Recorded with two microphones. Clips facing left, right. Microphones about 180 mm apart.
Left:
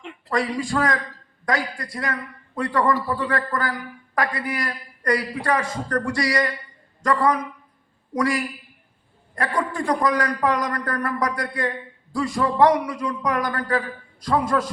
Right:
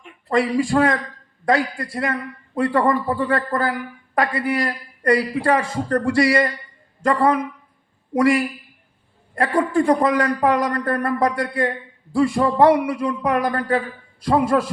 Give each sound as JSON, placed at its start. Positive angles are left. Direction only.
{"t": 0.3, "sound": "a man's voice", "side_deg": -30}